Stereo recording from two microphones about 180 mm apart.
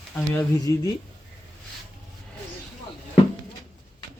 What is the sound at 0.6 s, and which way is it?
Speech, 20° left (ahead or behind).